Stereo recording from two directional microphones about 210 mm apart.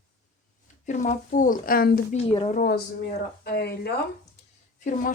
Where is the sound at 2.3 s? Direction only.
25° left (ahead or behind).